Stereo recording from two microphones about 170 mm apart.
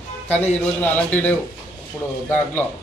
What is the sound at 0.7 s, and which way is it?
Speech, 10° left (ahead or behind).